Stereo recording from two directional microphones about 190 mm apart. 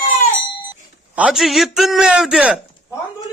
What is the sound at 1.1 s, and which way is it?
A man's voice, 5° right (ahead or behind).